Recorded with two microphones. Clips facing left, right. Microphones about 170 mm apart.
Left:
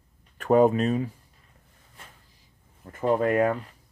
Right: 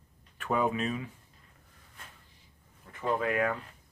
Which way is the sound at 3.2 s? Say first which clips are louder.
Left 7 dB; 45° left (ahead or behind).